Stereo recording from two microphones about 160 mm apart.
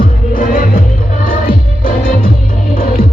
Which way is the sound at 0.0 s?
60° left (ahead or behind).